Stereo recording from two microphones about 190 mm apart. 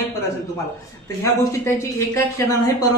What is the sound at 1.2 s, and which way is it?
Speech, 15° left (ahead or behind).